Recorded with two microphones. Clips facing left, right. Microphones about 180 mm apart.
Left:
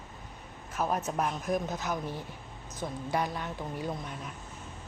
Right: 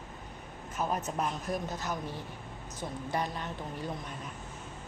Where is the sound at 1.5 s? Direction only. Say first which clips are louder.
Left 3 dB; 15° left (ahead or behind).